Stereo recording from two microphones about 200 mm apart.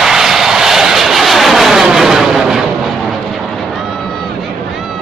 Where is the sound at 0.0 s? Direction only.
Centre (ahead or behind).